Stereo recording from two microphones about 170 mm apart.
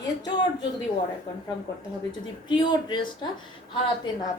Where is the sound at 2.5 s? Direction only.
25° left (ahead or behind).